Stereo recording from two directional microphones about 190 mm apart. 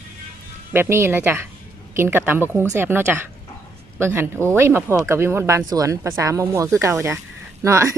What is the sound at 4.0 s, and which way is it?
A woman's voice, 10° right (ahead or behind).